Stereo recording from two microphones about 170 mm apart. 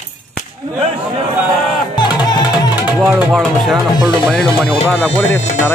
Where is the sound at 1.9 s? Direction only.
25° left (ahead or behind).